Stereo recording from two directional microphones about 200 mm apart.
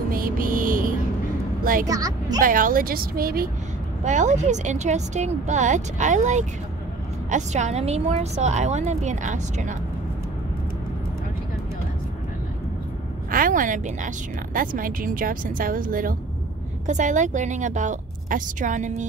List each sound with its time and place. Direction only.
0.1 s music: 45° right (ahead or behind)
1.6 s a sound: 45° right (ahead or behind)
1.9 s a woman's voice: 20° right (ahead or behind)
2.4 s speech: 45° right (ahead or behind)
4.0 s a woman's voice: 35° right (ahead or behind)
13.3 s a woman's voice: 45° right (ahead or behind)